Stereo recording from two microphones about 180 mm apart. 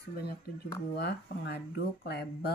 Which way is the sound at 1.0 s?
65° left (ahead or behind).